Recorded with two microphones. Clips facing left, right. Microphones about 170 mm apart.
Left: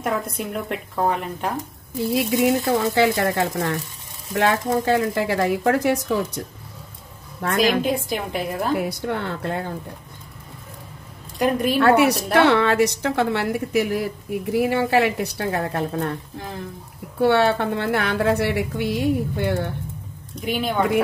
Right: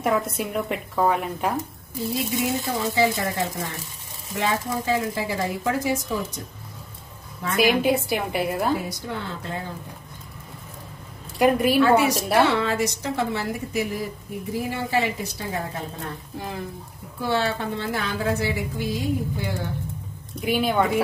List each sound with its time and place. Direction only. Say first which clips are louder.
0.0 s a woman's voice: right 2 dB; centre (ahead or behind)
2.0 s a woman's voice: left 6 dB; 70° left (ahead or behind)
7.5 s a woman's voice: even; 5° right (ahead or behind)
8.7 s a woman's voice: left 5 dB; 60° left (ahead or behind)
11.3 s a woman's voice: right 1 dB; 5° right (ahead or behind)
11.8 s a woman's voice: left 5 dB; 65° left (ahead or behind)
17.2 s a woman's voice: left 7 dB; 65° left (ahead or behind)
20.3 s a woman's voice: right 1 dB; 5° right (ahead or behind)